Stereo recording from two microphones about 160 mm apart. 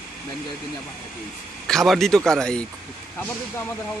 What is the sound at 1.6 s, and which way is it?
A man's voice, centre (ahead or behind).